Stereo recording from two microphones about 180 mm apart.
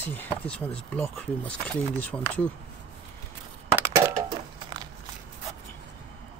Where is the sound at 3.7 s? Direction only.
15° right (ahead or behind).